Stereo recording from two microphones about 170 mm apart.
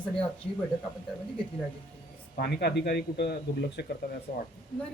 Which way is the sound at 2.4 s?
70° left (ahead or behind).